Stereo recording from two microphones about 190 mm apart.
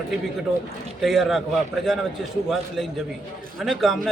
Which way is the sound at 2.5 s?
Centre (ahead or behind).